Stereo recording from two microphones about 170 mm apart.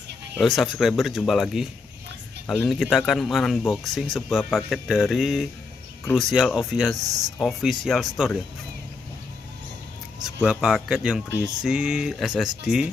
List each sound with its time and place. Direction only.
0.4 s speech: centre (ahead or behind)
2.4 s speech: 10° left (ahead or behind)
2.7 s speech: centre (ahead or behind)
10.2 s speech: 5° right (ahead or behind)